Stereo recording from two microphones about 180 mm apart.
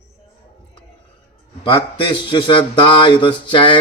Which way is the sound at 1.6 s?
30° left (ahead or behind).